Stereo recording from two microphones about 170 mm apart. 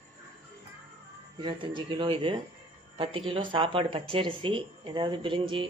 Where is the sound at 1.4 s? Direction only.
30° right (ahead or behind).